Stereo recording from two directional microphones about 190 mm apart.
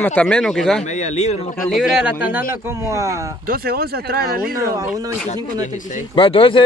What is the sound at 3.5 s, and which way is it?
Speech, 55° right (ahead or behind).